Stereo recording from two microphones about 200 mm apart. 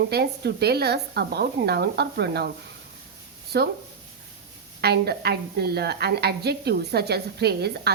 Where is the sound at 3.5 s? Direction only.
55° right (ahead or behind).